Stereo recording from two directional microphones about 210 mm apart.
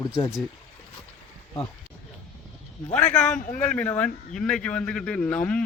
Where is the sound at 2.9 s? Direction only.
5° left (ahead or behind).